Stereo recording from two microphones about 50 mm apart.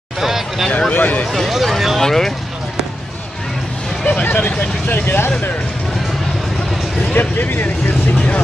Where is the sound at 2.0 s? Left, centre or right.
Centre.